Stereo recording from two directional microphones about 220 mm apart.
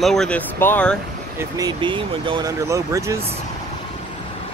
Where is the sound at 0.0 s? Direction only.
Centre (ahead or behind).